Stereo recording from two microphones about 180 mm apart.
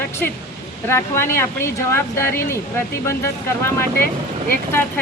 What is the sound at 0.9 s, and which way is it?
Speech, 15° left (ahead or behind).